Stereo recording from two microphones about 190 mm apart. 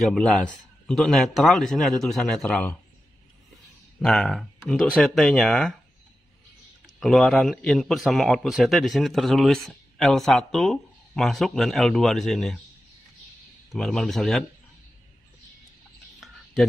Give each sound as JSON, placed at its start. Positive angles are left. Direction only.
{"t": 0.0, "sound": "a man's voice", "side_deg": 0}
{"t": 4.0, "sound": "a man's voice", "side_deg": 0}
{"t": 7.0, "sound": "a man's voice", "side_deg": 0}
{"t": 13.7, "sound": "a man's voice", "side_deg": 0}